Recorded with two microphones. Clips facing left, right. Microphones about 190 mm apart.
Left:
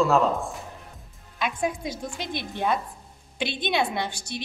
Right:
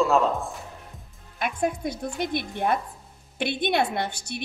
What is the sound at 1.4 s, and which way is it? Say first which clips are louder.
A woman's voice: right 1 dB; 55° right (ahead or behind).